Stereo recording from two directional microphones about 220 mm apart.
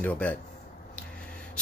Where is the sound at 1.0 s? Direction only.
5° left (ahead or behind).